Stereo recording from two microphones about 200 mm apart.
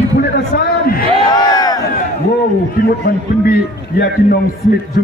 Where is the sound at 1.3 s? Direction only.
20° left (ahead or behind).